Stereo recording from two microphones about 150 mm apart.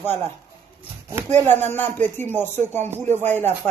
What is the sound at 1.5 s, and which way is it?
A woman's voice, 15° left (ahead or behind).